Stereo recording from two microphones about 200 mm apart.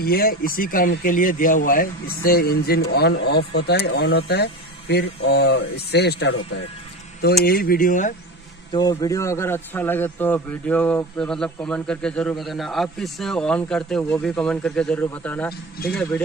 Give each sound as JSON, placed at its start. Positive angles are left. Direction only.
{"t": 0.0, "sound": "a man's voice", "side_deg": 50}
{"t": 8.7, "sound": "a man's voice", "side_deg": 20}